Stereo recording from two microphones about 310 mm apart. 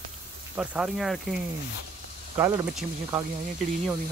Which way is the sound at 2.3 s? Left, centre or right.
Centre.